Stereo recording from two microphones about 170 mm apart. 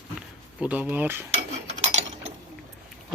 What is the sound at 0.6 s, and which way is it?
Speech, 10° right (ahead or behind).